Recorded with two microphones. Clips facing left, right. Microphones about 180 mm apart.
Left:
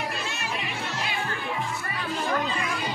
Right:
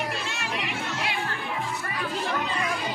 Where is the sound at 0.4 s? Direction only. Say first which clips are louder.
Right 1 dB; 75° right (ahead or behind).